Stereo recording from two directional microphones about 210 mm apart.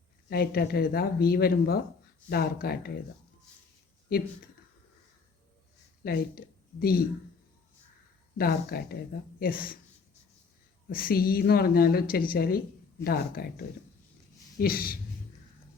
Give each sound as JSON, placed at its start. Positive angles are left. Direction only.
{"t": 0.3, "sound": "a woman's voice", "side_deg": 45}
{"t": 6.0, "sound": "speech", "side_deg": 45}
{"t": 8.4, "sound": "a woman's voice", "side_deg": 45}
{"t": 10.8, "sound": "a woman's voice", "side_deg": 45}
{"t": 14.6, "sound": "a woman's voice", "side_deg": 45}